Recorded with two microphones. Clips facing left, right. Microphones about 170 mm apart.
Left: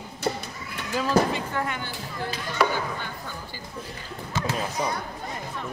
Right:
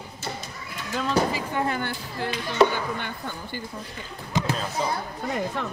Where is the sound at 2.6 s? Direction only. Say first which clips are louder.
Right 5 dB; 25° right (ahead or behind).